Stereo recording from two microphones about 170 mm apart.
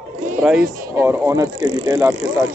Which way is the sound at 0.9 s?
15° right (ahead or behind).